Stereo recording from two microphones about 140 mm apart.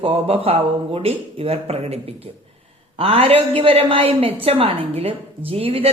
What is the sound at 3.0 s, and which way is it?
A man's voice, 45° right (ahead or behind).